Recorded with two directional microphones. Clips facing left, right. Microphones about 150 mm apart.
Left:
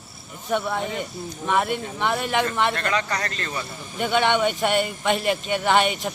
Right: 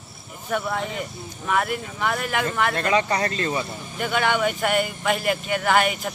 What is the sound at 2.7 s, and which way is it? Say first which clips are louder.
Speech: right 4 dB; 20° right (ahead or behind).